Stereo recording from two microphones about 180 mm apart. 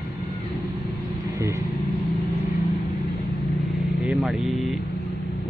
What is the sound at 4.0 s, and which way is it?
Vehicle, 5° right (ahead or behind).